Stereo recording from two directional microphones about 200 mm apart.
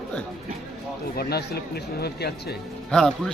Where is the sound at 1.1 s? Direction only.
55° left (ahead or behind).